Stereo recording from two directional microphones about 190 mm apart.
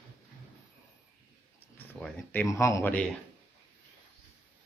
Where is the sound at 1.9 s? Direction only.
5° left (ahead or behind).